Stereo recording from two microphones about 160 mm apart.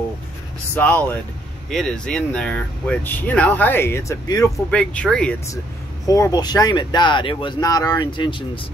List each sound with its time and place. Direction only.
0.7 s speech: 10° left (ahead or behind)
4.6 s speech: 5° left (ahead or behind)
6.0 s speech: 20° left (ahead or behind)